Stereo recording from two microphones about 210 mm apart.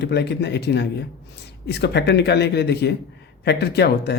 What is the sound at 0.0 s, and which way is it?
Speech, 55° left (ahead or behind).